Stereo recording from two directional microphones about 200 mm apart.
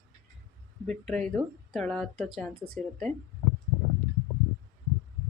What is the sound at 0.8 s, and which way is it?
Speech, 5° left (ahead or behind).